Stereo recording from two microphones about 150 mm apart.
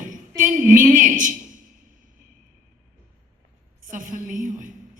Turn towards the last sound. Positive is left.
turn(degrees=-60)  # may be behind; listen again after turning